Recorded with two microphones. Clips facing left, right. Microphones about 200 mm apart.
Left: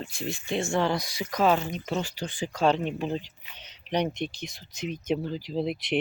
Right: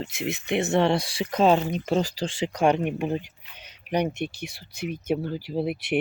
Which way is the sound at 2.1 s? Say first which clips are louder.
Right 5 dB; 85° right.